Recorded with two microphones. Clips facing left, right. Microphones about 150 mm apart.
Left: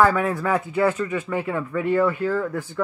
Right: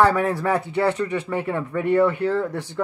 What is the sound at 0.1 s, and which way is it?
Speech, 30° right (ahead or behind).